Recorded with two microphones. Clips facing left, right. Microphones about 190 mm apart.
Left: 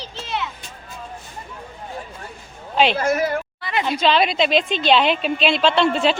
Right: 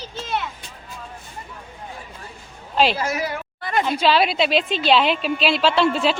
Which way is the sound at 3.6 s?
45° right (ahead or behind).